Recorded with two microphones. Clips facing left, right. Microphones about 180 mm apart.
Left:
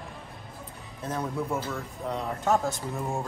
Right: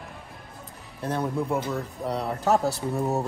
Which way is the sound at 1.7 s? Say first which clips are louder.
Right 4 dB; 35° right (ahead or behind).